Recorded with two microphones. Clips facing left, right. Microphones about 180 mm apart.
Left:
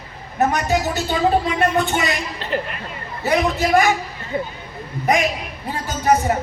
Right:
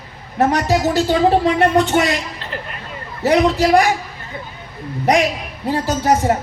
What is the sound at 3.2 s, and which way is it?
Speech, 90° right.